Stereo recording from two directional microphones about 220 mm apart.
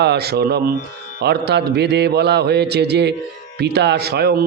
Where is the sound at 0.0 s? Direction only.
50° right (ahead or behind).